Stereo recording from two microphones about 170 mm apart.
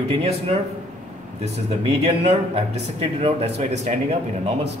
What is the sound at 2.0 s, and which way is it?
A man's voice, 35° right (ahead or behind).